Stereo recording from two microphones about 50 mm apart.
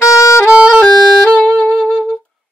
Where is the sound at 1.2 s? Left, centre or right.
Centre.